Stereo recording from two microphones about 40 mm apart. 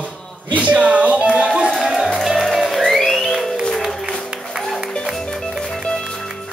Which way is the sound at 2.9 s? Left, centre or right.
Centre.